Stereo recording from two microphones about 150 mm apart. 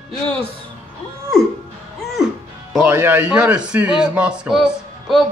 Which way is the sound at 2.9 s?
15° right (ahead or behind).